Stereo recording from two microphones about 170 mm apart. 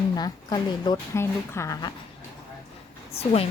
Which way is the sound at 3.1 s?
35° left (ahead or behind).